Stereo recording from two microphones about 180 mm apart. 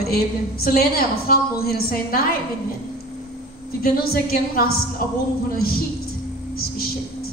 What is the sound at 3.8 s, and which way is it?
Speech, 60° left (ahead or behind).